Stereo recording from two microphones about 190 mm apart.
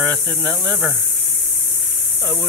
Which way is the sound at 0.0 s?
10° left (ahead or behind).